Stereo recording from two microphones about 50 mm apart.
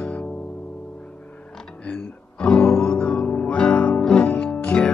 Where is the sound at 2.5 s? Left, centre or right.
Left.